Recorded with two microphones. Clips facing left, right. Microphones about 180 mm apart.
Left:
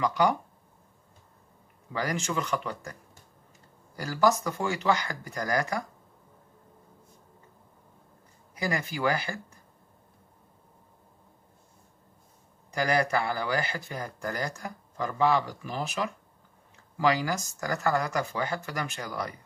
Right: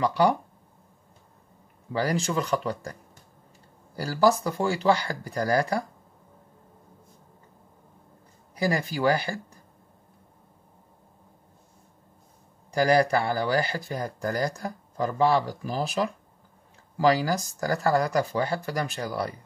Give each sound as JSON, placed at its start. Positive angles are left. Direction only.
{"t": 0.0, "sound": "speech", "side_deg": -30}
{"t": 1.9, "sound": "speech", "side_deg": -30}
{"t": 8.5, "sound": "speech", "side_deg": -35}
{"t": 12.7, "sound": "speech", "side_deg": -35}